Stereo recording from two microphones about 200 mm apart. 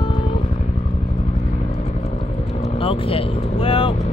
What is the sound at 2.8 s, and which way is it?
Vehicle, 25° left (ahead or behind).